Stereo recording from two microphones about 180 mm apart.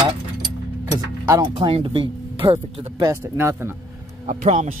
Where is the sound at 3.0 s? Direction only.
15° right (ahead or behind).